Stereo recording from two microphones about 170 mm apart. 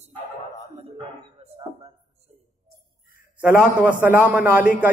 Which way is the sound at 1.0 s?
35° right (ahead or behind).